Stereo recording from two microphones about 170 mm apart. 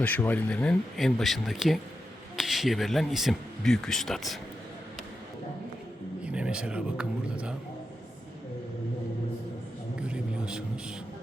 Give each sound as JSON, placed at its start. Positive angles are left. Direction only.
{"t": 0.0, "sound": "speech", "side_deg": 10}
{"t": 6.2, "sound": "speech", "side_deg": -5}
{"t": 9.9, "sound": "a sound", "side_deg": -5}